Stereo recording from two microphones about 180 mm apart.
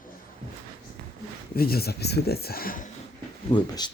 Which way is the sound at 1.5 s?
60° left (ahead or behind).